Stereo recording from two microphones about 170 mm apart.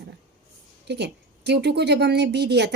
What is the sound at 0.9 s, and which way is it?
A woman's voice, 80° right.